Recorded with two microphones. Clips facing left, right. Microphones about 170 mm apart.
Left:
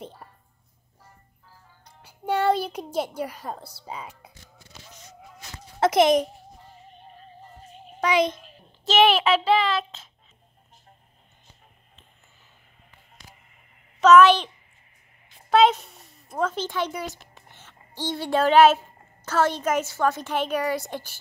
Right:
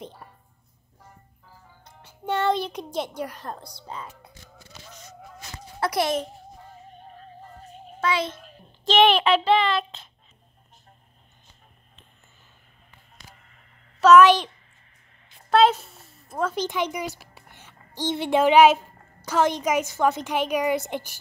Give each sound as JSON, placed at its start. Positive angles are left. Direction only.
{"t": 0.0, "sound": "a sound", "side_deg": 0}
{"t": 2.0, "sound": "a child's voice", "side_deg": 10}
{"t": 5.8, "sound": "a child's voice", "side_deg": 20}
{"t": 8.0, "sound": "a child's voice", "side_deg": 15}
{"t": 8.4, "sound": "a child's voice", "side_deg": 5}
{"t": 14.0, "sound": "a woman's voice", "side_deg": -10}
{"t": 15.6, "sound": "a sound", "side_deg": -5}
{"t": 16.5, "sound": "a woman's voice", "side_deg": -15}
{"t": 17.2, "sound": "a sound", "side_deg": -10}
{"t": 17.9, "sound": "a woman's voice", "side_deg": -20}